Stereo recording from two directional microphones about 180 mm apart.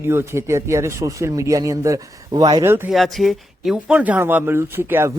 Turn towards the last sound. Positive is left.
turn(degrees=-15)  # may be behind; listen again after turning